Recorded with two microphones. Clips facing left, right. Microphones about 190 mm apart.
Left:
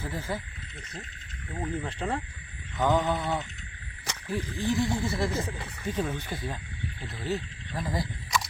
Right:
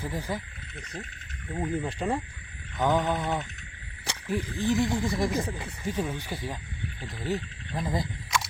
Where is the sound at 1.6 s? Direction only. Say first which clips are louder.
Right 3 dB; 10° right (ahead or behind).